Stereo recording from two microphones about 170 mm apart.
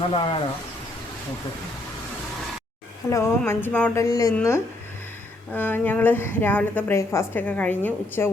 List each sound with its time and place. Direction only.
0.1 s speech: 30° left (ahead or behind)
3.1 s a woman's voice: 15° left (ahead or behind)
4.0 s a woman's voice: 20° left (ahead or behind)